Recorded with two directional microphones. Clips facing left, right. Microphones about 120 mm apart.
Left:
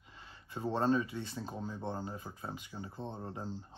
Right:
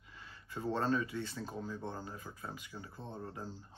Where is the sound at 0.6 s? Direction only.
20° left (ahead or behind).